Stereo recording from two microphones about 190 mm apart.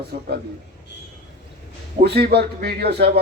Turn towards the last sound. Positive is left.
turn(degrees=-60)  # may be behind; listen again after turning